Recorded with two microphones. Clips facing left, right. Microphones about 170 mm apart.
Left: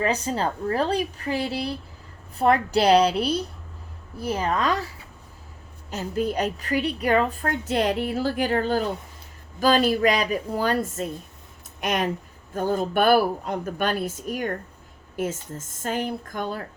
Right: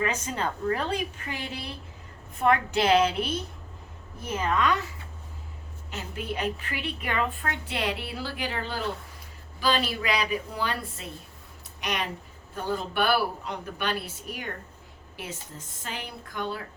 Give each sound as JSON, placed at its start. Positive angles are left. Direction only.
{"t": 0.0, "sound": "a woman's voice", "side_deg": 35}
{"t": 5.9, "sound": "a woman's voice", "side_deg": 40}